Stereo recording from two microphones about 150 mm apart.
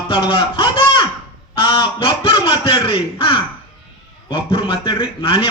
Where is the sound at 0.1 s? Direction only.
35° left (ahead or behind).